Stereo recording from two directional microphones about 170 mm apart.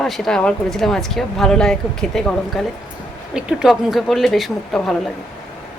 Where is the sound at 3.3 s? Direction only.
Centre (ahead or behind).